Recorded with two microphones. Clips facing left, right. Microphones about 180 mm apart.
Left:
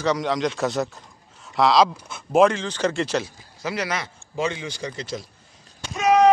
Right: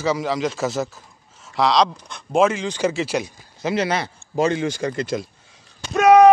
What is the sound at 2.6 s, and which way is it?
Speech, 10° right (ahead or behind).